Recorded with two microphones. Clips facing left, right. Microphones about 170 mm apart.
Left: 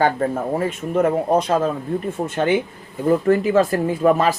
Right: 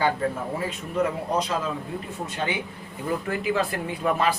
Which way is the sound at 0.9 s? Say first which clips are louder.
Left 7 dB; 50° left (ahead or behind).